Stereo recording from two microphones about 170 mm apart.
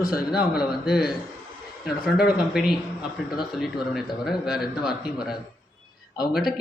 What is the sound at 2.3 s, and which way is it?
Speech, centre (ahead or behind).